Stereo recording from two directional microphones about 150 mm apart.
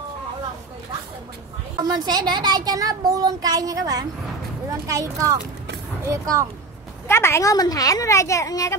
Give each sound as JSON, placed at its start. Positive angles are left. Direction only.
{"t": 1.8, "sound": "speech", "side_deg": -25}
{"t": 7.1, "sound": "a woman's voice", "side_deg": 15}